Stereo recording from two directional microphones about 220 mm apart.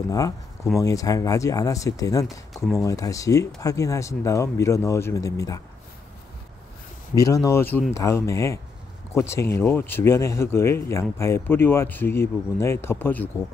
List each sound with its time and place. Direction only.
0.7 s speech: 15° left (ahead or behind)
2.2 s speech: centre (ahead or behind)
2.8 s speech: 15° left (ahead or behind)
7.2 s speech: 15° left (ahead or behind)